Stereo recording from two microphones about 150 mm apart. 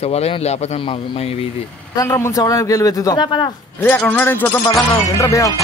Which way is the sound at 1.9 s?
20° left (ahead or behind).